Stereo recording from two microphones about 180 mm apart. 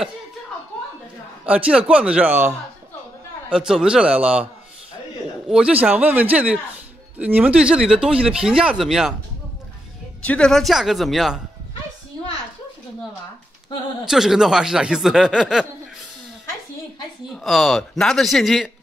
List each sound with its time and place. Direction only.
1.4 s a man's voice: 5° right (ahead or behind)
5.5 s a man's voice: 5° right (ahead or behind)
10.2 s speech: 5° left (ahead or behind)
14.0 s speech: centre (ahead or behind)
17.4 s speech: centre (ahead or behind)